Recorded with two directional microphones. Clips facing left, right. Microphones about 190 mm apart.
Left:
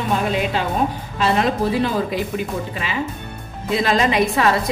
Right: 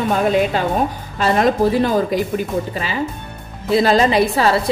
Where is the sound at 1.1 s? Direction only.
45° right (ahead or behind).